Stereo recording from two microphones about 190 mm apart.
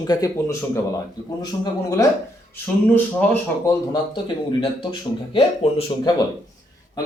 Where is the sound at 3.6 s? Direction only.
25° left (ahead or behind).